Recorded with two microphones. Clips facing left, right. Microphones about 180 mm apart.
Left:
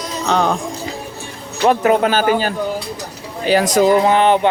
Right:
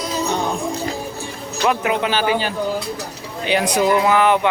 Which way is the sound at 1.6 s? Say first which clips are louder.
Left 6 dB; 40° left (ahead or behind).